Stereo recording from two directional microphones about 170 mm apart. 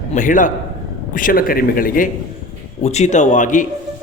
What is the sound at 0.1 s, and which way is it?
A man's voice, 50° left (ahead or behind).